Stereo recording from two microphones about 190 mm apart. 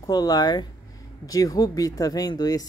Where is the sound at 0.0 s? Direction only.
20° left (ahead or behind).